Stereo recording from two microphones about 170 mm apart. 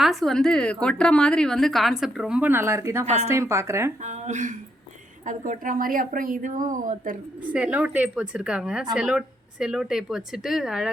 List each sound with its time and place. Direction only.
0.0 s a woman's voice: centre (ahead or behind); by 3.9 s 15° right (ahead or behind)
4.0 s speech: 45° right (ahead or behind)
7.5 s a woman's voice: 10° right (ahead or behind)